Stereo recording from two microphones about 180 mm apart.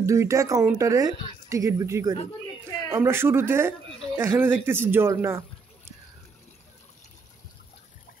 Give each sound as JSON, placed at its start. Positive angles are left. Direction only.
{"t": 0.0, "sound": "speech", "side_deg": -15}